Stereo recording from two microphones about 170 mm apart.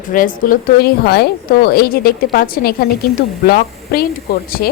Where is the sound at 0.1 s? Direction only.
55° left (ahead or behind).